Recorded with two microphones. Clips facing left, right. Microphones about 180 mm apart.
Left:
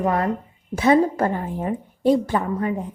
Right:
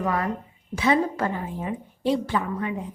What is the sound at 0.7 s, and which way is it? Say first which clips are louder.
A woman's voice: left 5 dB; 45° left (ahead or behind).